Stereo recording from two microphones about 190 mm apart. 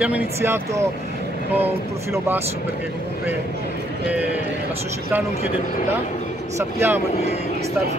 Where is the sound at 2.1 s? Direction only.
10° right (ahead or behind).